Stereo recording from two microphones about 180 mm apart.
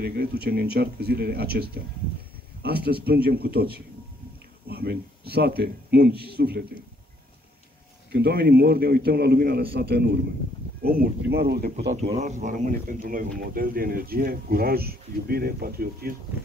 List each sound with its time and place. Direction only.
0.0 s a man's voice: 60° right (ahead or behind)
8.1 s a man's voice: 60° right (ahead or behind)
11.9 s speech: 40° right (ahead or behind)